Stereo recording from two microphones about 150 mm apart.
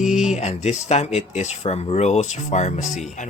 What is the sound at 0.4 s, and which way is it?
Speech, 45° left (ahead or behind).